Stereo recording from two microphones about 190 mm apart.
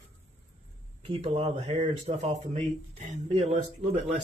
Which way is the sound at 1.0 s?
30° right (ahead or behind).